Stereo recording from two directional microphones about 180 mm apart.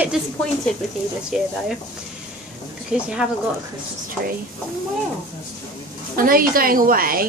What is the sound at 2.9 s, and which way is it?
Speech, 5° right (ahead or behind).